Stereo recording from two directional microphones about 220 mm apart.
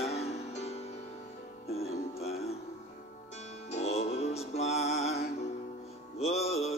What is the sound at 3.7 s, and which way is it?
Music, 30° left (ahead or behind).